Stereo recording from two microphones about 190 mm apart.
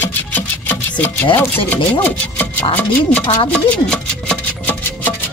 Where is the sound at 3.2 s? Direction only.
20° left (ahead or behind).